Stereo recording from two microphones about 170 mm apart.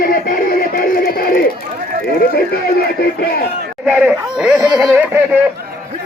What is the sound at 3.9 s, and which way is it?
Speech, 5° right (ahead or behind).